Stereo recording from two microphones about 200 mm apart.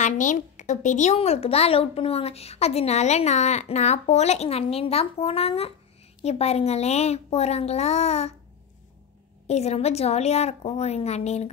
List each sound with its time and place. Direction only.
0.0 s speech: 40° left (ahead or behind)
9.5 s speech: 30° left (ahead or behind)